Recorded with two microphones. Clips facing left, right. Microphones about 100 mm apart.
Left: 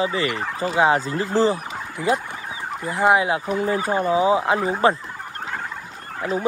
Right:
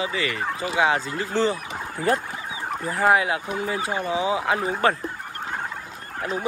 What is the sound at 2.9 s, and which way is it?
Speech, 20° left (ahead or behind).